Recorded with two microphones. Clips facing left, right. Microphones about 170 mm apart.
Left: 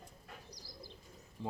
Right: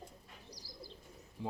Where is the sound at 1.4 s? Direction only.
10° right (ahead or behind).